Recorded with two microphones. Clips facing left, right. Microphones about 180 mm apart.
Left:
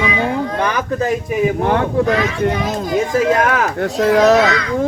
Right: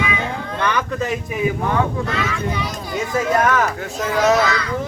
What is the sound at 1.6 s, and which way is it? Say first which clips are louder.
Speech: left 5 dB; 70° left (ahead or behind).